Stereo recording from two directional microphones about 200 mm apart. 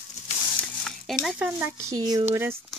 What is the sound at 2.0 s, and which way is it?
Speech, 20° right (ahead or behind).